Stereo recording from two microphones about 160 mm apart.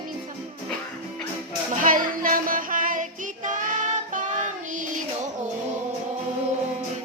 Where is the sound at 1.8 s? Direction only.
60° right (ahead or behind).